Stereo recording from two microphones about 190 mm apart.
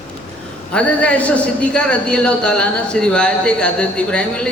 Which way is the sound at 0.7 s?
5° left (ahead or behind).